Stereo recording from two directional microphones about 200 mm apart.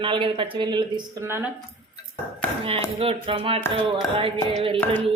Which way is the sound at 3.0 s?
30° right (ahead or behind).